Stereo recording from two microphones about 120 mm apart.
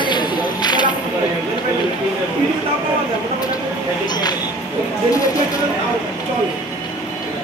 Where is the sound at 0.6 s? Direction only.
35° left (ahead or behind).